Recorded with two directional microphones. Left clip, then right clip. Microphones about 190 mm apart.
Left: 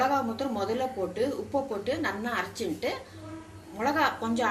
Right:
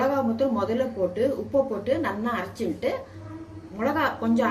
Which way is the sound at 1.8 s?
40° right (ahead or behind).